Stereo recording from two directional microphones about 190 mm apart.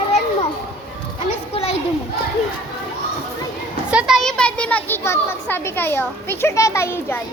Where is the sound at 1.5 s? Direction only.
30° left (ahead or behind).